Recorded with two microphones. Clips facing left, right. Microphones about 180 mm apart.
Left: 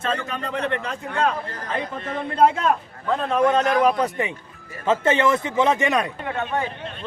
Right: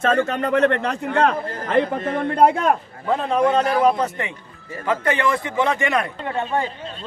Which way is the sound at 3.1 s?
5° right (ahead or behind).